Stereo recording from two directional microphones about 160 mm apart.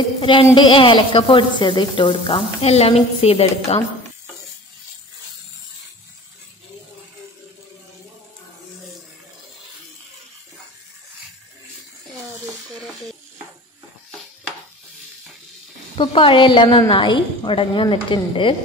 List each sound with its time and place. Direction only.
0.2 s sizzle: 35° left (ahead or behind)
16.0 s sizzle: 35° left (ahead or behind)